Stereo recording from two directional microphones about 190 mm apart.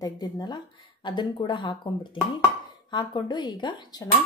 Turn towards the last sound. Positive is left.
turn(degrees=20)  # may be behind; listen again after turning